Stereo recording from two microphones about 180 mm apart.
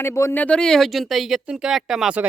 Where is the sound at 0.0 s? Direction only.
15° left (ahead or behind).